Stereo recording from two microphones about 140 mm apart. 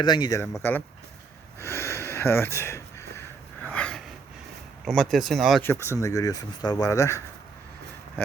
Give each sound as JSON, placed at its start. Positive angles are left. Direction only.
{"t": 0.0, "sound": "speech", "side_deg": 30}
{"t": 0.3, "sound": "speech", "side_deg": 20}
{"t": 1.5, "sound": "a sound", "side_deg": 20}
{"t": 4.9, "sound": "speech", "side_deg": 0}
{"t": 5.6, "sound": "speech", "side_deg": 20}